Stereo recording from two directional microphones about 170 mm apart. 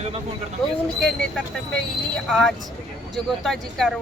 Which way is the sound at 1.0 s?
5° left (ahead or behind).